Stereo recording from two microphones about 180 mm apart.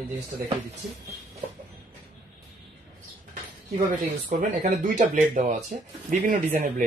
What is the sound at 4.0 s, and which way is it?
Speech, 45° right (ahead or behind).